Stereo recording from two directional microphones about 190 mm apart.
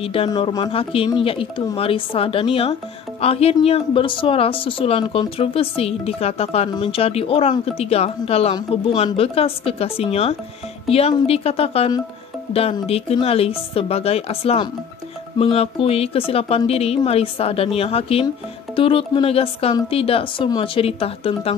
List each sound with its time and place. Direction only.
0.0 s a woman's voice: 30° left (ahead or behind)